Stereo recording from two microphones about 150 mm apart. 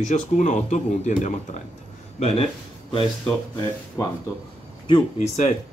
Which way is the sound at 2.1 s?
40° left (ahead or behind).